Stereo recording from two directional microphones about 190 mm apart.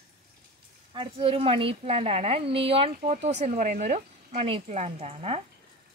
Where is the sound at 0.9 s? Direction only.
30° right (ahead or behind).